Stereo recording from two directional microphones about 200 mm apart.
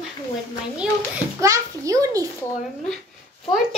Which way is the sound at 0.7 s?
10° right (ahead or behind).